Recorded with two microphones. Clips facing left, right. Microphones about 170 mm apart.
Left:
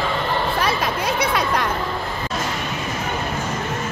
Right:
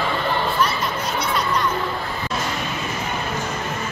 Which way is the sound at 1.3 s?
65° left (ahead or behind).